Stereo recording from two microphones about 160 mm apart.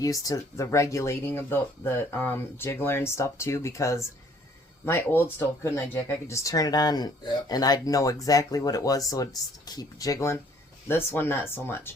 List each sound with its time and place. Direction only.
0.0 s speech: 20° left (ahead or behind)